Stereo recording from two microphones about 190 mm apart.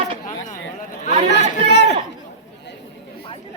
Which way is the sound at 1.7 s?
65° left (ahead or behind).